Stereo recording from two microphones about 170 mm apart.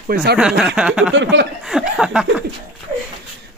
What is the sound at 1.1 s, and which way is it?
Speech, 90° right.